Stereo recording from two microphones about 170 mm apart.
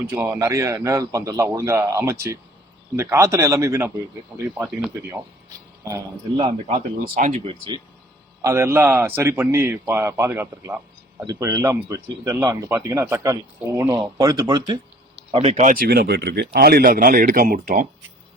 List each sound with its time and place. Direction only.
0.1 s a man's voice: 15° right (ahead or behind)
6.3 s speech: 35° right (ahead or behind)
7.2 s speech: 45° right (ahead or behind)
8.4 s a man's voice: 15° right (ahead or behind)
15.3 s speech: 40° right (ahead or behind); by 17.8 s 60° right (ahead or behind)